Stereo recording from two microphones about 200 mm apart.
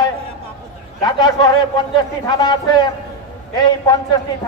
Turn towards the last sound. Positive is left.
turn(degrees=20)  # may be behind; listen again after turning